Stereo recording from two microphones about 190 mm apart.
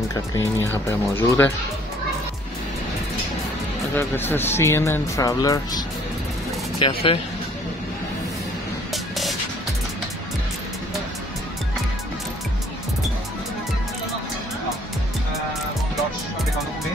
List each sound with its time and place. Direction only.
0.1 s speech: 15° left (ahead or behind)
3.9 s speech: 10° left (ahead or behind); by 7.2 s 30° left (ahead or behind)